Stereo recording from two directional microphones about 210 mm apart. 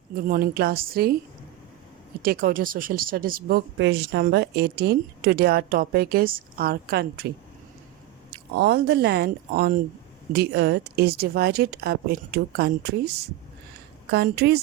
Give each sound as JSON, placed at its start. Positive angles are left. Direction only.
{"t": 0.1, "sound": "speech", "side_deg": -45}
{"t": 2.2, "sound": "speech", "side_deg": -45}
{"t": 3.8, "sound": "speech", "side_deg": -55}
{"t": 8.3, "sound": "speech", "side_deg": -50}